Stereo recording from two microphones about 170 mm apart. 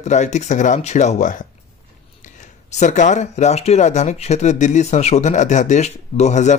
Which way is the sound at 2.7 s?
45° left (ahead or behind).